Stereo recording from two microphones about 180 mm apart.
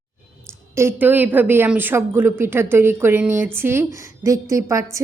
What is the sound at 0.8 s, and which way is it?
A woman's voice, 10° right (ahead or behind).